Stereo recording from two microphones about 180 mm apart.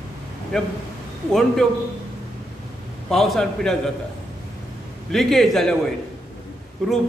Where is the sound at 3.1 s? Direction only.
Centre (ahead or behind).